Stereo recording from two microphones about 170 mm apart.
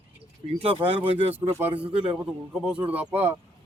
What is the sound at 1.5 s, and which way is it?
A man's voice, 10° right (ahead or behind).